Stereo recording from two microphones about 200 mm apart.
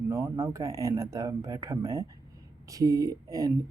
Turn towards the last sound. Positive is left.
turn(degrees=-15)  # may be behind; listen again after turning